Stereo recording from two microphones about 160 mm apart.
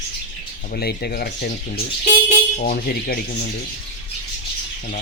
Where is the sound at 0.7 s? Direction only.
75° left (ahead or behind).